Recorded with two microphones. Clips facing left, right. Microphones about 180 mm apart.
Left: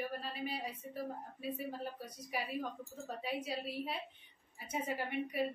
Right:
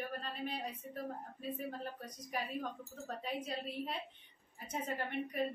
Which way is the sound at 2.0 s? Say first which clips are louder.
Even; 10° left (ahead or behind).